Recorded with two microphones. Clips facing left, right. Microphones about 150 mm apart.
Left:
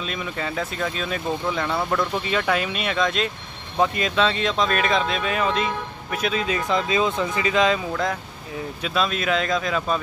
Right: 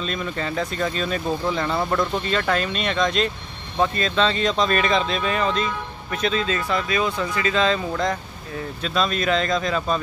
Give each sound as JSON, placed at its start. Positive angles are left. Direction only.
{"t": 0.0, "sound": "speech", "side_deg": 5}
{"t": 4.3, "sound": "speech", "side_deg": 5}
{"t": 8.8, "sound": "speech", "side_deg": 5}